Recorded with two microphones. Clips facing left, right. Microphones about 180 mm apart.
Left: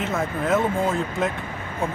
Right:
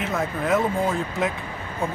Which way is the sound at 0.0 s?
Centre (ahead or behind).